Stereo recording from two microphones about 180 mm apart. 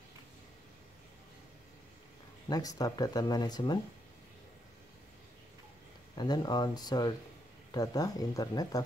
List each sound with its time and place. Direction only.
2.8 s speech: 20° left (ahead or behind)
6.1 s speech: 25° left (ahead or behind)